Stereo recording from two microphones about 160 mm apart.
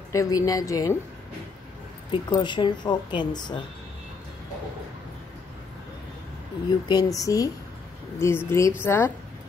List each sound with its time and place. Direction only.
0.1 s speech: 20° left (ahead or behind)
2.0 s speech: 25° left (ahead or behind)
6.9 s a woman's voice: 25° left (ahead or behind)